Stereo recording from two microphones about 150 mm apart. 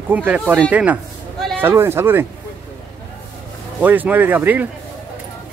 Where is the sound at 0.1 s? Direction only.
10° right (ahead or behind).